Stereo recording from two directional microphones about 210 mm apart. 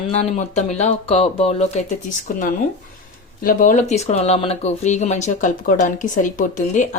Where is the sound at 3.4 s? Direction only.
40° left (ahead or behind).